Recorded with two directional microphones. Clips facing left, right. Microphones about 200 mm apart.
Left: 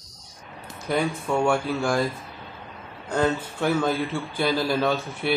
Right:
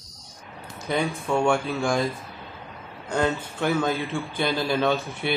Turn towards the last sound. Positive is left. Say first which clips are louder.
# even
turn(degrees=5)  # may be behind; listen again after turning